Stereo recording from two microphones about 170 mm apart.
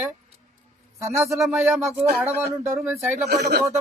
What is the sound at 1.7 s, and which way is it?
Speech, centre (ahead or behind).